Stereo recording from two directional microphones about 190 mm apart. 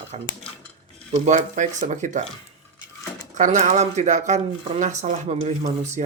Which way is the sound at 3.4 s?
40° right (ahead or behind).